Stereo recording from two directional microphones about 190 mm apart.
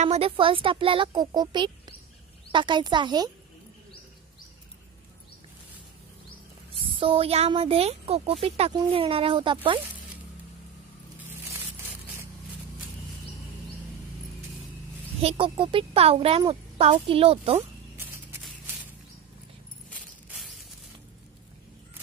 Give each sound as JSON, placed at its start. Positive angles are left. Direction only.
{"t": 0.0, "sound": "a child's voice", "side_deg": -30}
{"t": 7.0, "sound": "a child's voice", "side_deg": -30}
{"t": 11.1, "sound": "coin", "side_deg": -10}
{"t": 15.2, "sound": "a child's voice", "side_deg": -30}
{"t": 17.9, "sound": "a sound", "side_deg": -10}